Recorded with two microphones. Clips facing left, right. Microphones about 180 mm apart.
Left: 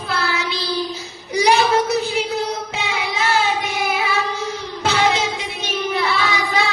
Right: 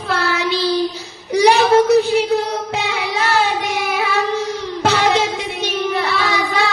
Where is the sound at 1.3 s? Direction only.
60° right (ahead or behind).